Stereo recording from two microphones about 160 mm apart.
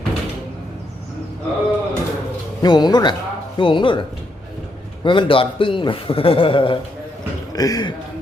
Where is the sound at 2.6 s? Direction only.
25° left (ahead or behind).